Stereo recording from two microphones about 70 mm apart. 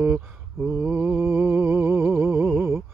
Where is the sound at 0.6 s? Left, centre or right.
Right.